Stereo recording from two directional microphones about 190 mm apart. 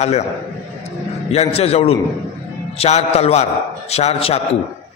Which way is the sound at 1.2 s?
35° left (ahead or behind).